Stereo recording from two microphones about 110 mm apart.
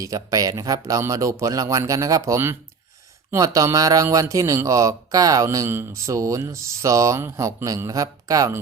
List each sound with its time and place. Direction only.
0.0 s speech: 30° right (ahead or behind)